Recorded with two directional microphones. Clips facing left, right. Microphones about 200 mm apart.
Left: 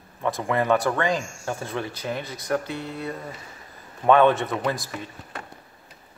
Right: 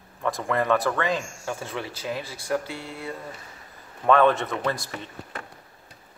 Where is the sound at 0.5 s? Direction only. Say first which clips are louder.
Left 1 dB; centre (ahead or behind).